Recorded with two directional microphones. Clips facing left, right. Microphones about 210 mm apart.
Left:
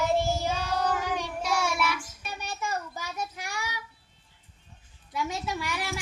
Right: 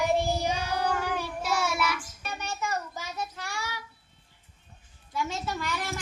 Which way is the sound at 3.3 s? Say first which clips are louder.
Even; 15° left (ahead or behind).